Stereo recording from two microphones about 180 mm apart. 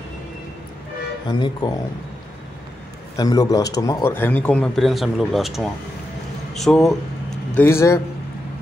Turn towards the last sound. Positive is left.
turn(degrees=15)  # may be behind; listen again after turning